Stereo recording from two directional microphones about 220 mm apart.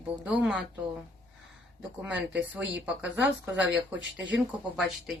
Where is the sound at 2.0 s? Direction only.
5° right (ahead or behind).